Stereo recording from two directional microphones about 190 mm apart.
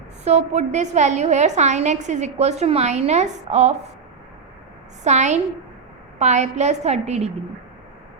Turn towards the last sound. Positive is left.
turn(degrees=-35)  # may be behind; listen again after turning